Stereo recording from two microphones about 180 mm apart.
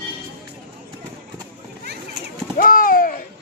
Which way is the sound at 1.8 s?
65° right (ahead or behind).